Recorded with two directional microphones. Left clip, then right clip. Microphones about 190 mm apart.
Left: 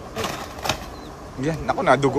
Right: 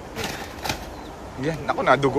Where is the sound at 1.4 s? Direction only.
15° left (ahead or behind).